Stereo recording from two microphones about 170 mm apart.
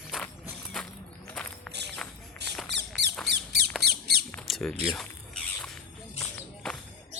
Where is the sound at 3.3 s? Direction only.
70° right (ahead or behind).